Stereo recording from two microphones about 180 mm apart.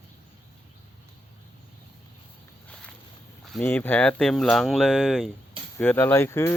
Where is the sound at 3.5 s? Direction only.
10° left (ahead or behind).